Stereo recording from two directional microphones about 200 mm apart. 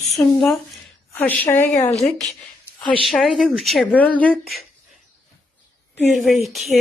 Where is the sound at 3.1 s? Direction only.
Centre (ahead or behind).